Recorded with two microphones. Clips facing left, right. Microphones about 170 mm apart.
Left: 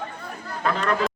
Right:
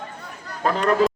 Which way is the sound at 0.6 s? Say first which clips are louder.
Right 3 dB; 40° right (ahead or behind).